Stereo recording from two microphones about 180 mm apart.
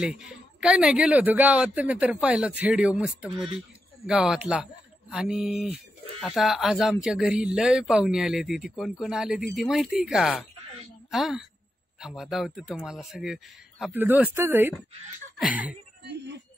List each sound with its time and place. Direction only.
0.0 s a man's voice: 5° right (ahead or behind)
16.0 s speech: 65° right (ahead or behind)